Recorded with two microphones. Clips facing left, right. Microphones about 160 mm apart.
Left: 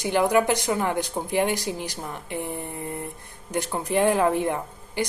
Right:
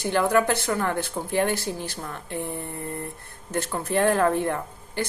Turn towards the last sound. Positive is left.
turn(degrees=15)  # may be behind; listen again after turning